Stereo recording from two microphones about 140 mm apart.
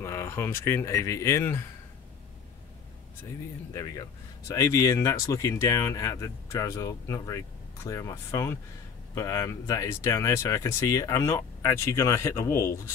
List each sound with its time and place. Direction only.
0.0 s speech: 20° left (ahead or behind)
3.7 s speech: 25° left (ahead or behind)